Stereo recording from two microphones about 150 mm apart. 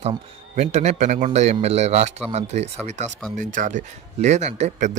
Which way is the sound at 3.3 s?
60° right (ahead or behind).